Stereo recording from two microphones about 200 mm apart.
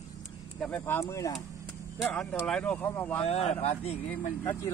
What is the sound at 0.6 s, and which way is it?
Speech, 10° left (ahead or behind).